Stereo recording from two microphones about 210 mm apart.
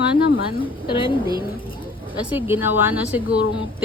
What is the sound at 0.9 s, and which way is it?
Speech, 25° left (ahead or behind).